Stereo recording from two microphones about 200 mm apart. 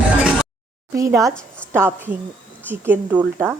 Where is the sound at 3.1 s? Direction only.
10° right (ahead or behind).